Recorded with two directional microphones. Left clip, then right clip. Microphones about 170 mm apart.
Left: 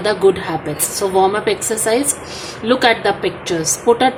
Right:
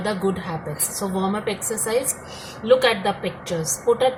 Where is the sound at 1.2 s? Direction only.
35° left (ahead or behind).